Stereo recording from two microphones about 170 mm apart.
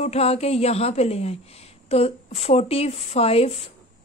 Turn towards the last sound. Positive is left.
turn(degrees=35)  # may be behind; listen again after turning